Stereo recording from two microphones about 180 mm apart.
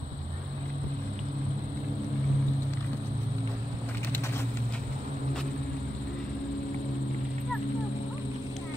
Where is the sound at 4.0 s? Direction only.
10° left (ahead or behind).